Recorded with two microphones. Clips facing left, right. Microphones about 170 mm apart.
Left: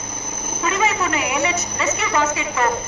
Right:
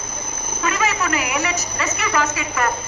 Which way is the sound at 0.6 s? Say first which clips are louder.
Left 1 dB; 25° left (ahead or behind).